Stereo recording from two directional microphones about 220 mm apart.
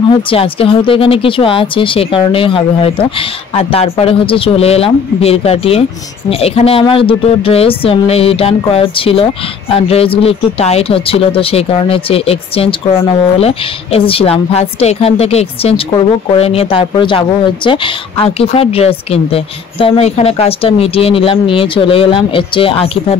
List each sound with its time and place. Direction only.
0.3 s speech: 25° left (ahead or behind)